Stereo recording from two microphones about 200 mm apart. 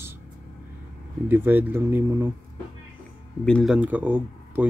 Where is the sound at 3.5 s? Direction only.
5° left (ahead or behind).